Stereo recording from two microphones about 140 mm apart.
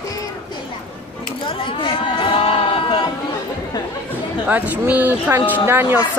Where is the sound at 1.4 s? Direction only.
40° left (ahead or behind).